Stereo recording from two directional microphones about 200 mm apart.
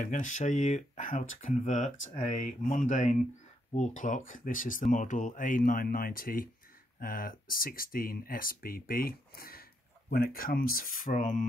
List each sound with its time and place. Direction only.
0.0 s speech: 40° left (ahead or behind)